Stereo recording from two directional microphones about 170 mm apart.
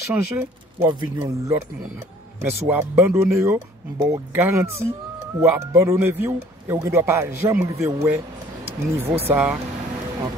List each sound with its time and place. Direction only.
0.1 s speech: 10° right (ahead or behind)
0.8 s a man's voice: 20° right (ahead or behind)